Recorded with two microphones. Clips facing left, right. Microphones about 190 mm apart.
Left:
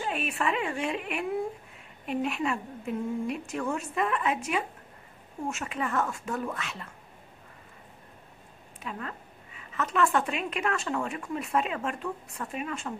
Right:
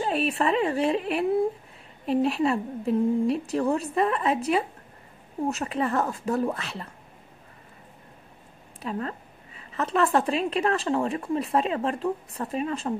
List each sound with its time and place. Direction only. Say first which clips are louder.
0.0 s a woman's voice: right 6 dB; 35° right (ahead or behind)
8.8 s a woman's voice: right 7 dB; 35° right (ahead or behind)